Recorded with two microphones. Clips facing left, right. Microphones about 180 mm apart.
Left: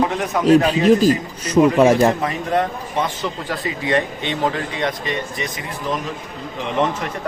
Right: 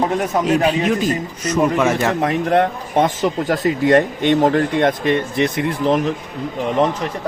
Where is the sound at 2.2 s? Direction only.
60° right (ahead or behind).